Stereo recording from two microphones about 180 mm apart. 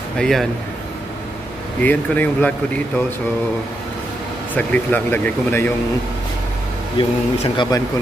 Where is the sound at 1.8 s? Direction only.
10° left (ahead or behind).